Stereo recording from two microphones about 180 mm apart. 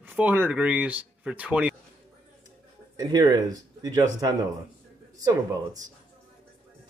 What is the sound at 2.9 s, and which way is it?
A man's voice, 20° right (ahead or behind).